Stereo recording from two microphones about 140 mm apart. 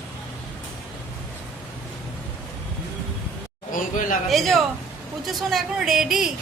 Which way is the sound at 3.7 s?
70° left (ahead or behind).